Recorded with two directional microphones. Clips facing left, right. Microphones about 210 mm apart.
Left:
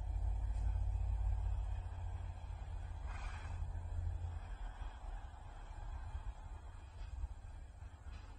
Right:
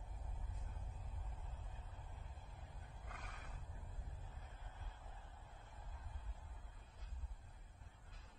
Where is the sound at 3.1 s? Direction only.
60° right (ahead or behind).